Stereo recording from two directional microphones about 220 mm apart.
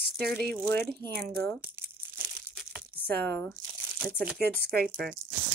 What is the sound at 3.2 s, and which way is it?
Speech, 10° left (ahead or behind).